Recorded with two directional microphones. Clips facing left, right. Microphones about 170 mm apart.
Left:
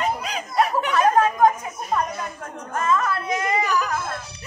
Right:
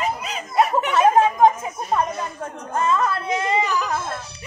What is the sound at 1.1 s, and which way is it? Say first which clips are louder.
Chatter: right 2 dB; 25° right (ahead or behind).